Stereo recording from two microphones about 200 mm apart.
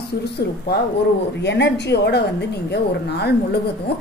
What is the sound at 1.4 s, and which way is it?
A woman's voice, 55° left (ahead or behind).